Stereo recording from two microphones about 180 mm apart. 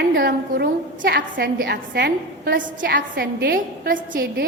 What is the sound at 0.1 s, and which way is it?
A woman's voice, 55° right (ahead or behind).